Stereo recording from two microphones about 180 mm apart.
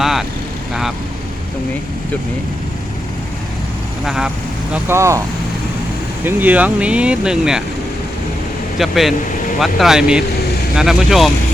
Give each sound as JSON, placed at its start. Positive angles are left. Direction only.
{"t": 0.0, "sound": "vehicle", "side_deg": 0}
{"t": 0.7, "sound": "speech", "side_deg": 0}
{"t": 4.0, "sound": "speech", "side_deg": -5}
{"t": 4.7, "sound": "speech", "side_deg": -15}
{"t": 6.2, "sound": "speech", "side_deg": -10}
{"t": 8.8, "sound": "speech", "side_deg": 0}